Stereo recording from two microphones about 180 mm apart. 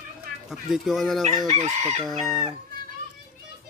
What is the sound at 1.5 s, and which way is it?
Chicken, 40° right (ahead or behind).